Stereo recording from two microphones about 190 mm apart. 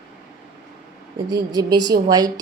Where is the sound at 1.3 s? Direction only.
20° right (ahead or behind).